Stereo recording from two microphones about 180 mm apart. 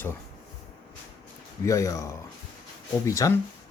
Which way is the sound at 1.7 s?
20° left (ahead or behind).